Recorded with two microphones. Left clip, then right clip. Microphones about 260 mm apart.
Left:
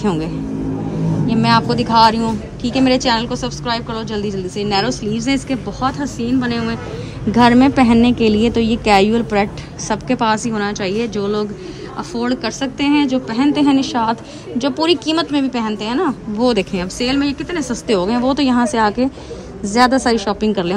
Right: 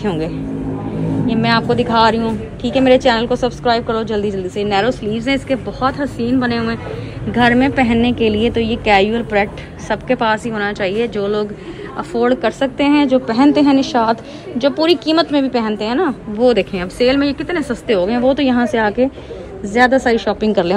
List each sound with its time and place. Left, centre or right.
0.0 s a woman's voice: centre